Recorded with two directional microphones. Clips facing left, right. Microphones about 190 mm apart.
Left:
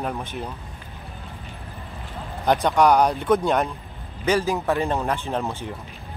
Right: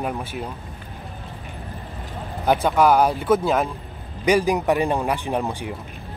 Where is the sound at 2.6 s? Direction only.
5° right (ahead or behind).